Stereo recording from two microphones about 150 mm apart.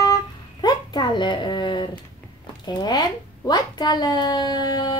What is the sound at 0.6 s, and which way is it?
A child's voice, 30° left (ahead or behind).